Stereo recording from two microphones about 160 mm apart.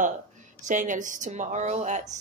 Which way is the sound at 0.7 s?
55° right (ahead or behind).